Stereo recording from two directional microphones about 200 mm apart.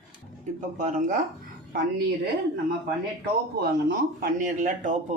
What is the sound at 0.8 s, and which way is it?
Speech, 40° right (ahead or behind).